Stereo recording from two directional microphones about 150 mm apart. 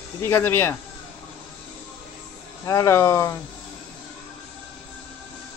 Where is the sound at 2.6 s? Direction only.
20° left (ahead or behind).